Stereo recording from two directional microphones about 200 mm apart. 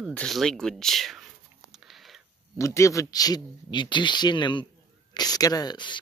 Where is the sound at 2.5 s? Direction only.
15° left (ahead or behind).